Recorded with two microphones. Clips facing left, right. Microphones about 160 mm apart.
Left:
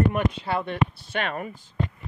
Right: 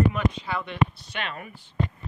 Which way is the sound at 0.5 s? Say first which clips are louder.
Left 1 dB; 45° left (ahead or behind).